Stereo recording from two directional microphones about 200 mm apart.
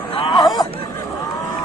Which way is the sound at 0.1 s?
25° left (ahead or behind).